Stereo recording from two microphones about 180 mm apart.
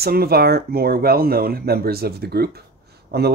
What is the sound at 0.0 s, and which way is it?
Speech, 60° right (ahead or behind).